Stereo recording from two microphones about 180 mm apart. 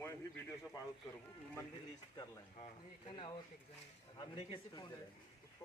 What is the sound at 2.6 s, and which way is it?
Speech, 30° left (ahead or behind).